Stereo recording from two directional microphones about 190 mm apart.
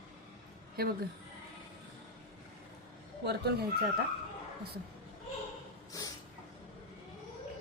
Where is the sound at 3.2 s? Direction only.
60° right (ahead or behind).